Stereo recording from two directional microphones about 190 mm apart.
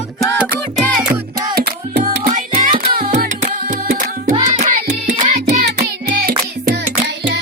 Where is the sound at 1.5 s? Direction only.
55° right (ahead or behind).